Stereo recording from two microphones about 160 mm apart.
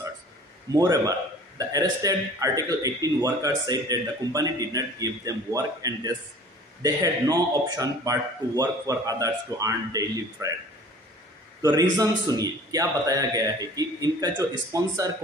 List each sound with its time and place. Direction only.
0.7 s a man's voice: 25° right (ahead or behind)
11.6 s a man's voice: 25° right (ahead or behind)